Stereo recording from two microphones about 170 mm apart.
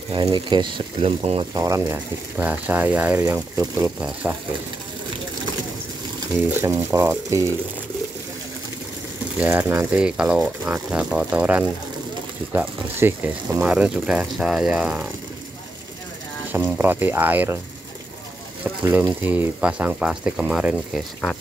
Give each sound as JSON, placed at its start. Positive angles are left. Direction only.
{"t": 0.1, "sound": "speech", "side_deg": -25}
{"t": 1.6, "sound": "speech", "side_deg": -15}
{"t": 6.6, "sound": "speech", "side_deg": -15}
{"t": 9.4, "sound": "speech", "side_deg": -10}
{"t": 16.5, "sound": "speech", "side_deg": -15}
{"t": 18.6, "sound": "speech", "side_deg": -10}